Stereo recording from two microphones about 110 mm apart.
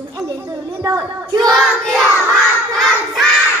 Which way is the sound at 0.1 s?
25° right (ahead or behind).